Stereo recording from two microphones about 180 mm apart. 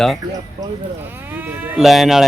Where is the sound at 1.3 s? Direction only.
10° right (ahead or behind).